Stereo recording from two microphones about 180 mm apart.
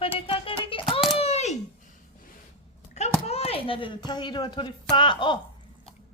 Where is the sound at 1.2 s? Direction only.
35° left (ahead or behind).